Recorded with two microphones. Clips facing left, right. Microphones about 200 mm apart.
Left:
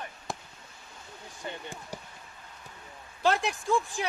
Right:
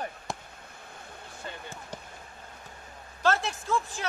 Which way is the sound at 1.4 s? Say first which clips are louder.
Left 3 dB; 15° left (ahead or behind).